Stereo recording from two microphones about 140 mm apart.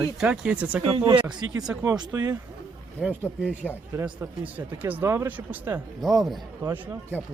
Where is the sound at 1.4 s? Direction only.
25° right (ahead or behind).